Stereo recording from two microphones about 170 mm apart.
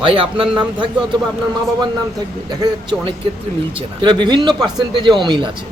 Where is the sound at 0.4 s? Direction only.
5° right (ahead or behind).